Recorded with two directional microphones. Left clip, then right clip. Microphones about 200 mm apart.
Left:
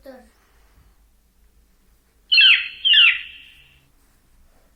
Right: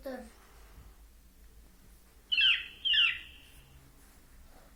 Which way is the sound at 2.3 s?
40° left (ahead or behind).